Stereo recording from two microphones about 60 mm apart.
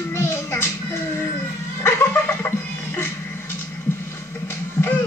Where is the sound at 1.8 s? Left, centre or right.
Left.